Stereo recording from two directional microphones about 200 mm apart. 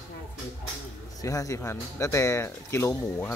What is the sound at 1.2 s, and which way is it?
Speech, 15° left (ahead or behind).